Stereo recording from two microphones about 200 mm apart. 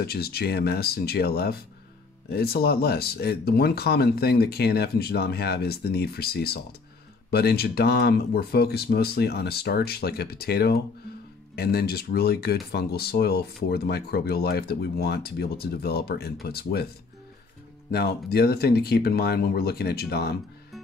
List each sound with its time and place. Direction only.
0.0 s speech: 50° left (ahead or behind)
17.9 s speech: 50° left (ahead or behind)